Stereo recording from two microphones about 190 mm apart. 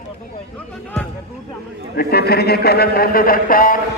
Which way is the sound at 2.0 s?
55° left (ahead or behind).